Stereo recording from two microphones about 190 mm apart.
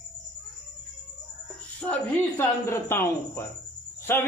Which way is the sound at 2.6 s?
10° left (ahead or behind).